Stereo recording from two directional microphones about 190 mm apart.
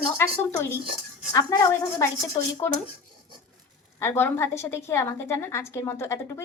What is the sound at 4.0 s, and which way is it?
A woman's voice, 10° left (ahead or behind).